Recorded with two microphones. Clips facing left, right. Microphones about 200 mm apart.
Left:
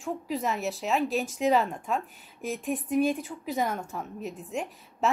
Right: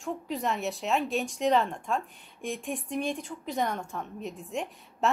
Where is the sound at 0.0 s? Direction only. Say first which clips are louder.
Left 1 dB; centre (ahead or behind).